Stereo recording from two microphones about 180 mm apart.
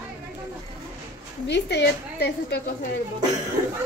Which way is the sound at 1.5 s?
70° left (ahead or behind).